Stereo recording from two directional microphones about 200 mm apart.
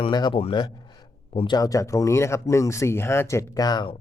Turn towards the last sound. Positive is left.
turn(degrees=20)  # may be behind; listen again after turning